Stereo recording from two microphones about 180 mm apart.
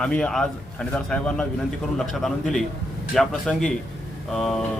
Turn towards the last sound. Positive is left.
turn(degrees=0)  # may be behind; listen again after turning